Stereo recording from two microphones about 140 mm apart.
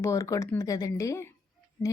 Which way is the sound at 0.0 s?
25° left (ahead or behind).